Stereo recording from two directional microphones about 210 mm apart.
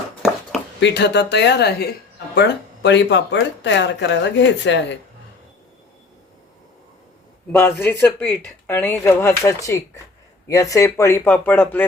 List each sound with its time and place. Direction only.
0.8 s speech: 55° left (ahead or behind)
7.5 s speech: 10° left (ahead or behind)